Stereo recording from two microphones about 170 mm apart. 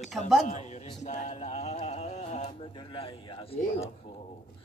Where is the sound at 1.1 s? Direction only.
40° left (ahead or behind).